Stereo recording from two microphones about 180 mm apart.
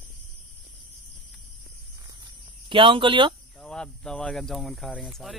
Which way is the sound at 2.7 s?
30° right (ahead or behind).